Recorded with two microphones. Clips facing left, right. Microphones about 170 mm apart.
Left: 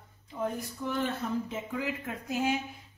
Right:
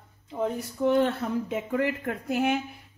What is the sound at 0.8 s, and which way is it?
A woman's voice, 65° right (ahead or behind).